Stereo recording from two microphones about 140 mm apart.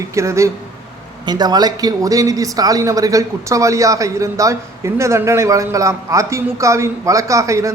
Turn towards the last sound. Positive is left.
turn(degrees=-20)  # may be behind; listen again after turning